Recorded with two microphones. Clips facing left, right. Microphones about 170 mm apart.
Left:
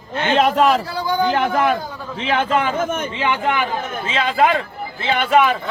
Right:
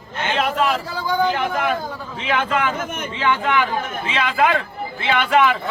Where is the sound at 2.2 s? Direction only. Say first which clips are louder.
Left 3 dB; 30° left (ahead or behind).